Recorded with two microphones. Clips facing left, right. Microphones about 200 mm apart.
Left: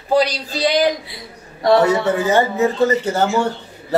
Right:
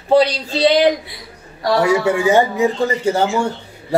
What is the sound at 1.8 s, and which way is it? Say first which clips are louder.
A man's voice: right 1 dB; 10° right (ahead or behind).